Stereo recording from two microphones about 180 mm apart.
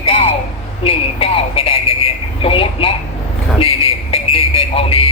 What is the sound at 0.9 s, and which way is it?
A man's voice, 30° left (ahead or behind).